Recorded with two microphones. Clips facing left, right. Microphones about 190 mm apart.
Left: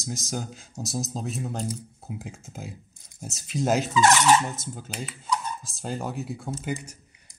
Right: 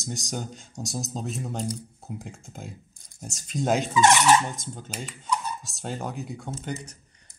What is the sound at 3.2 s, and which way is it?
Dishes, 5° left (ahead or behind).